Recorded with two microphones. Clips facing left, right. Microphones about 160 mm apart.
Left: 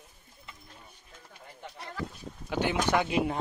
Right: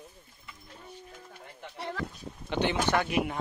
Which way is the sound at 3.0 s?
25° left (ahead or behind).